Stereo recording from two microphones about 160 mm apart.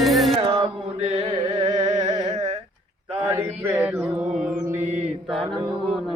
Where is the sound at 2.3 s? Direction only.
40° right (ahead or behind).